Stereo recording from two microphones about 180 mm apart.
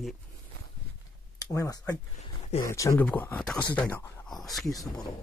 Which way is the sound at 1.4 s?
20° left (ahead or behind).